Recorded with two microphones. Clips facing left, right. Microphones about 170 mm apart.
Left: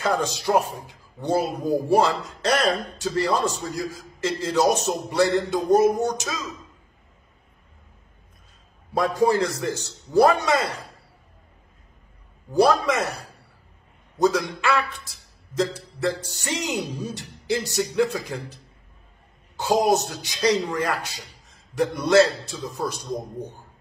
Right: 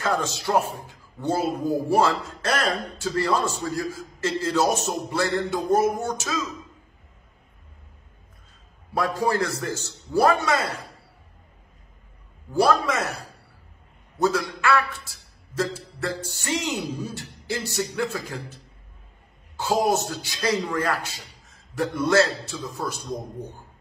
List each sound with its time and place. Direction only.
0.0 s a man's voice: 15° left (ahead or behind)
8.9 s a man's voice: 20° left (ahead or behind)
12.5 s a man's voice: 20° left (ahead or behind)
14.2 s a man's voice: 20° left (ahead or behind)